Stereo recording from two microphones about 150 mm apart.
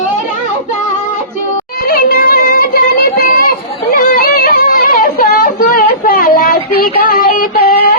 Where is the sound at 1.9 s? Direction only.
85° left.